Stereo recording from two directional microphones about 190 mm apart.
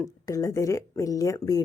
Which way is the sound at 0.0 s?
15° left (ahead or behind).